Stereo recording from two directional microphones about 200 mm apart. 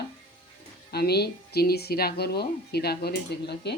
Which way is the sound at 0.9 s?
55° left (ahead or behind).